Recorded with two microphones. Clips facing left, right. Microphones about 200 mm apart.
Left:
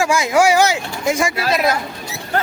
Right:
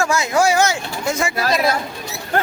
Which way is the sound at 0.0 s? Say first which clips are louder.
Left 2 dB; 10° left (ahead or behind).